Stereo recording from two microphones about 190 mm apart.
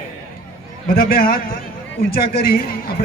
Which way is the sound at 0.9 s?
50° left (ahead or behind).